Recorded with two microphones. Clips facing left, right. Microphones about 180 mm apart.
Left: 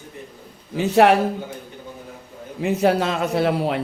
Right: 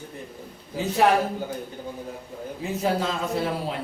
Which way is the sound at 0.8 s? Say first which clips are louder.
Left 6 dB; 70° left (ahead or behind).